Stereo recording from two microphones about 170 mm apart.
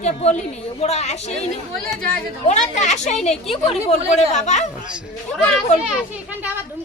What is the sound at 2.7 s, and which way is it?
Speech, 40° left (ahead or behind).